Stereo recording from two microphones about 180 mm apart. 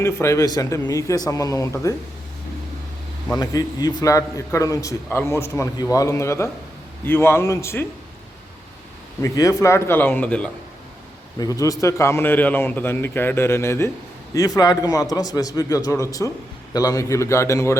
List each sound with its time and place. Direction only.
0.0 s a man's voice: 15° left (ahead or behind)
3.3 s a man's voice: 20° left (ahead or behind)
9.2 s a man's voice: 20° left (ahead or behind)
11.3 s a man's voice: 20° left (ahead or behind)